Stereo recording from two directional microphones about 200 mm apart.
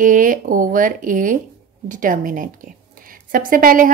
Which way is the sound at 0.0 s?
40° right (ahead or behind).